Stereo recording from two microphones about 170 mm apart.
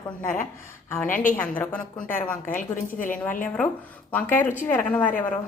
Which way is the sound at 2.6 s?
50° left (ahead or behind).